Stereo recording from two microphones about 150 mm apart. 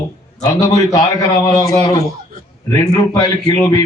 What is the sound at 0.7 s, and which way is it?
A man's voice, 25° left (ahead or behind).